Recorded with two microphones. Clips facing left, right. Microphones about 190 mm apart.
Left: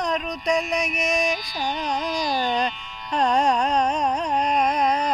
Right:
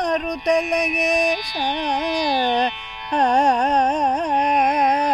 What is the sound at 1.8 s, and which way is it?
Music, 65° right (ahead or behind).